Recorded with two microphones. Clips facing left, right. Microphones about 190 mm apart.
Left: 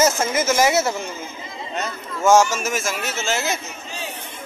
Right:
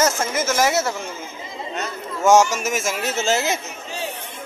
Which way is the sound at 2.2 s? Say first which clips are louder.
Even; 15° right (ahead or behind).